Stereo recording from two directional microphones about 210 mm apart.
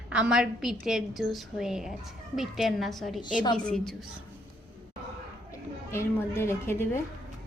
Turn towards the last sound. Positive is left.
turn(degrees=10)  # may be behind; listen again after turning